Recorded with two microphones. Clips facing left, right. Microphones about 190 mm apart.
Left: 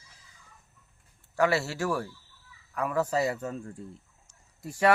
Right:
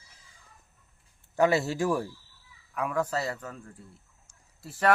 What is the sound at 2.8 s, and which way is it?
Speech, 5° left (ahead or behind).